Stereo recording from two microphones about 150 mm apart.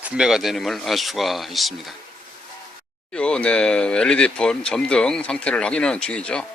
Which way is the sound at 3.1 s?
5° left (ahead or behind).